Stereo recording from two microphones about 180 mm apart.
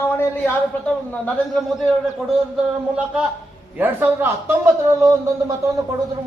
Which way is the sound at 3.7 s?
10° right (ahead or behind).